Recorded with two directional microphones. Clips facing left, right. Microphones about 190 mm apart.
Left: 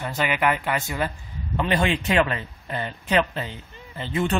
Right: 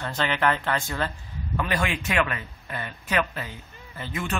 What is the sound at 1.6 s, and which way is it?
Speech, 25° left (ahead or behind).